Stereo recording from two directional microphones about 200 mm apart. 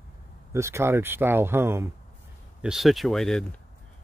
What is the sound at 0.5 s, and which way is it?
Speech, 15° right (ahead or behind).